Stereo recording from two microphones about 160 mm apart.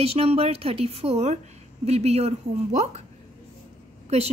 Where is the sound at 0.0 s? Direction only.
40° right (ahead or behind).